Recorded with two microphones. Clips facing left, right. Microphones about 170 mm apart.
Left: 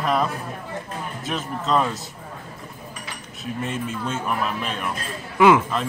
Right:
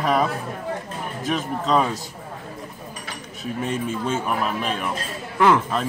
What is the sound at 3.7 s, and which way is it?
Speech, centre (ahead or behind).